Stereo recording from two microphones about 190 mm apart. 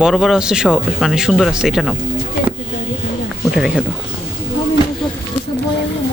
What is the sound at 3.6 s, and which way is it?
Speech, 5° right (ahead or behind).